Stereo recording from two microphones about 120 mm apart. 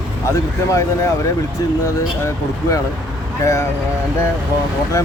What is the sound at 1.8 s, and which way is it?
Speech, 30° left (ahead or behind).